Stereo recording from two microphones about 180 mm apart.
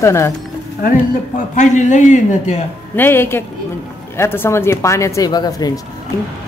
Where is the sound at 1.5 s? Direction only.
40° left (ahead or behind).